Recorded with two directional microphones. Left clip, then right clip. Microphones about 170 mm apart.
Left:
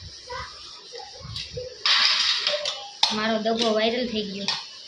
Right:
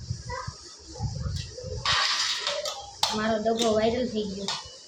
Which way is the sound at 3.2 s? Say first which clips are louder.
Left 2 dB; 10° left (ahead or behind).